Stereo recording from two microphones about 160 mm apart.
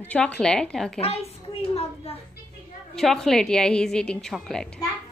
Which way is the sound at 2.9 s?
Centre (ahead or behind).